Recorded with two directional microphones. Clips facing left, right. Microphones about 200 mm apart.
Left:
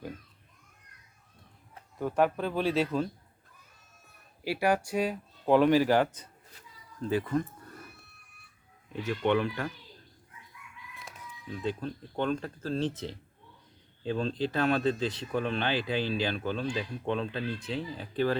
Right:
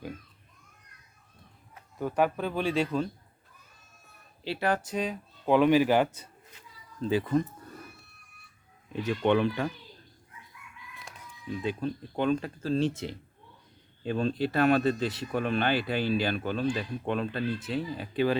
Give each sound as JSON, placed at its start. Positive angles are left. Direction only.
{"t": 2.0, "sound": "speech", "side_deg": -5}
{"t": 4.4, "sound": "speech", "side_deg": 10}
{"t": 5.5, "sound": "speech", "side_deg": -15}
{"t": 9.0, "sound": "speech", "side_deg": -15}
{"t": 11.5, "sound": "speech", "side_deg": -10}